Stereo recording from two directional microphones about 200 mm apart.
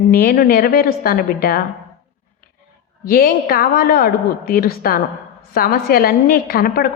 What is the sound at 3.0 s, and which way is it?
A woman's voice, 50° left (ahead or behind).